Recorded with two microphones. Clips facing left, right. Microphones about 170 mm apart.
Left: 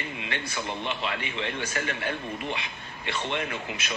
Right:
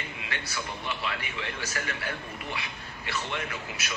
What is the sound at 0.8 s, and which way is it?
A man's voice, 20° left (ahead or behind).